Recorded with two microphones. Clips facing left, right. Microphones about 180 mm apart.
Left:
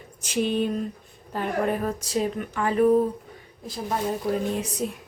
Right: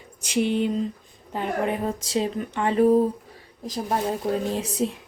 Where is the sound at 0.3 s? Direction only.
15° right (ahead or behind).